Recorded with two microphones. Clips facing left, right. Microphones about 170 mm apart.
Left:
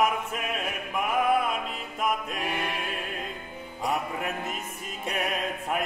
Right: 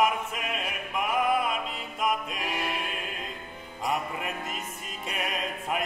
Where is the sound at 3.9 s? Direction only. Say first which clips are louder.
Left 1 dB; centre (ahead or behind).